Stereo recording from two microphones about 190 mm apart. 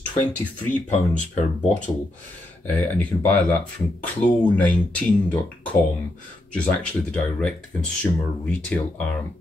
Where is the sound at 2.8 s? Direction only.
5° left (ahead or behind).